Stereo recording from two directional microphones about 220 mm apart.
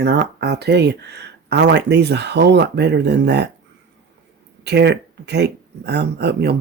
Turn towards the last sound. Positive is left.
turn(degrees=-50)  # may be behind; listen again after turning